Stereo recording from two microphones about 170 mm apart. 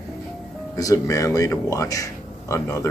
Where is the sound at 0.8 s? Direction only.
20° left (ahead or behind).